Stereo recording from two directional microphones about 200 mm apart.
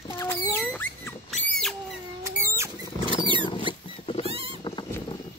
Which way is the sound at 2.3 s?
15° right (ahead or behind).